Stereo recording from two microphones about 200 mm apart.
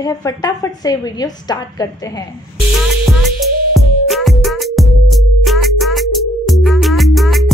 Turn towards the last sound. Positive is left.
turn(degrees=0)  # may be behind; listen again after turning